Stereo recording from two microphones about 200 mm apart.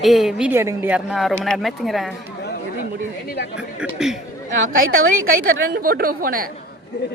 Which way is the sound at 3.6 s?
5° right (ahead or behind).